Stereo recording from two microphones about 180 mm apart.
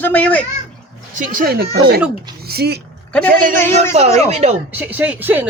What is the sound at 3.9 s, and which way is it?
Speech, 35° right (ahead or behind).